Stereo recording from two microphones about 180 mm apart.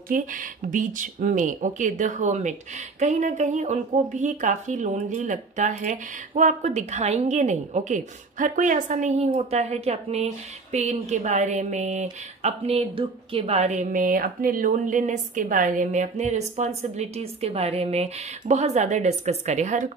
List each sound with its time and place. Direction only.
0.1 s speech: 50° right (ahead or behind)